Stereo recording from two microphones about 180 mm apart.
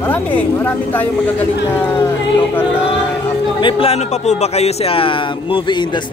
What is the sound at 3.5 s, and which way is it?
A man's voice, 30° left (ahead or behind).